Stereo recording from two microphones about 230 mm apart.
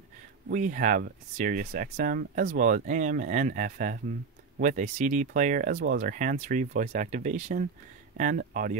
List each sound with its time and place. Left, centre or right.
0.5 s speech: right